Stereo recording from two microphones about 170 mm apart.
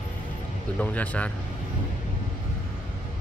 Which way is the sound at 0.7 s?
10° left (ahead or behind).